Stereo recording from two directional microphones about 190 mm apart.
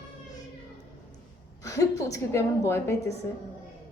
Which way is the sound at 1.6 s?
15° left (ahead or behind).